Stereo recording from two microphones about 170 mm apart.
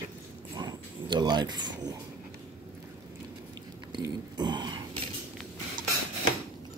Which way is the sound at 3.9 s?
25° right (ahead or behind).